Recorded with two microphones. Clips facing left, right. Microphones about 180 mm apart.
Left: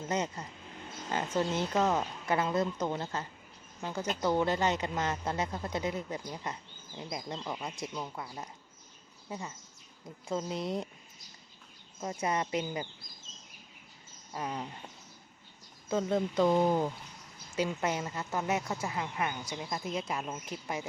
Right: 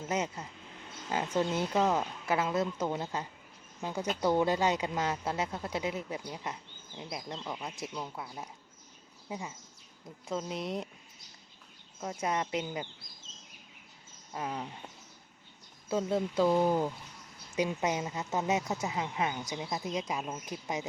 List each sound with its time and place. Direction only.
0.1 s speech: 5° right (ahead or behind)
11.9 s speech: centre (ahead or behind)
14.3 s speech: 5° right (ahead or behind)
15.9 s speech: 5° right (ahead or behind)